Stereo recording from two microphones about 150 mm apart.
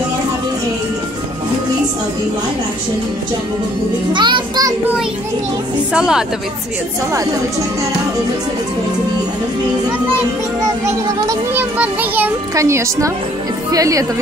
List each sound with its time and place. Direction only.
4.1 s a child's voice: 30° right (ahead or behind)
5.9 s a woman's voice: 5° right (ahead or behind)
10.6 s a child's voice: 20° right (ahead or behind)